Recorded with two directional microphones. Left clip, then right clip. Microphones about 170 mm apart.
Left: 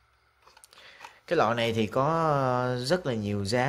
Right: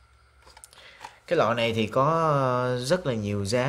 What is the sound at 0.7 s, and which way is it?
Speech, 20° left (ahead or behind).